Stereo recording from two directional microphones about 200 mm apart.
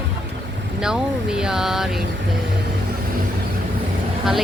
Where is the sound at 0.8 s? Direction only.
5° right (ahead or behind).